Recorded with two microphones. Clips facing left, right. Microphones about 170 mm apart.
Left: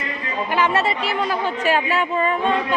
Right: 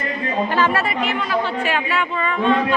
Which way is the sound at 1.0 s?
40° left (ahead or behind).